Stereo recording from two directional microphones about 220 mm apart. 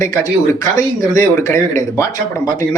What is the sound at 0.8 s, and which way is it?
Speech, 15° left (ahead or behind).